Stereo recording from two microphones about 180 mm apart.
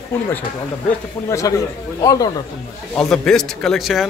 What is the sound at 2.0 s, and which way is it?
Speech, 20° left (ahead or behind).